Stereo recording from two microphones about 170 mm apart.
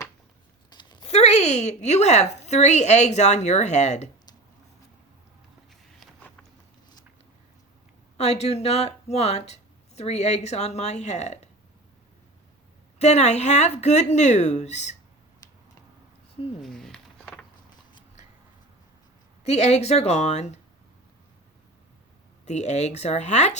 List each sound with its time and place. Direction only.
0.7 s a sound: 25° left (ahead or behind)
1.1 s speech: 40° left (ahead or behind)
8.2 s speech: 40° left (ahead or behind)
13.0 s speech: 40° left (ahead or behind)
16.6 s a sound: centre (ahead or behind)
19.5 s speech: 40° left (ahead or behind)
22.4 s speech: 40° left (ahead or behind)